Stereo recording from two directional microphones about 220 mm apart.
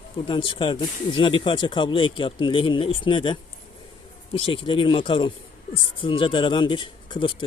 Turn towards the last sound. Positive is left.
turn(degrees=20)  # may be behind; listen again after turning